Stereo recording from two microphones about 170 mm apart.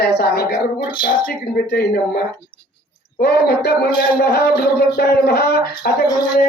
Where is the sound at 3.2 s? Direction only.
70° left (ahead or behind).